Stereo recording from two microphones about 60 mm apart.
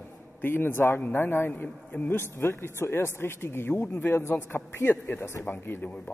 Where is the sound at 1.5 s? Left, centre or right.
Left.